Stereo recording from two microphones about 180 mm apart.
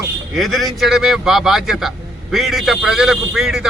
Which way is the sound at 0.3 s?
Centre (ahead or behind).